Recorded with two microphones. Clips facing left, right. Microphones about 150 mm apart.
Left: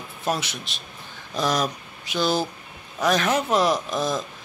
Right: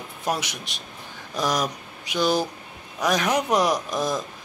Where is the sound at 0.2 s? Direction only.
15° right (ahead or behind).